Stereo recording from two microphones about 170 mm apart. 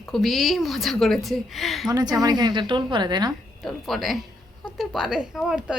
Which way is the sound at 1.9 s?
20° right (ahead or behind).